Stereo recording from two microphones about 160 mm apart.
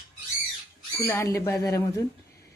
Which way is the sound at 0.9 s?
15° left (ahead or behind).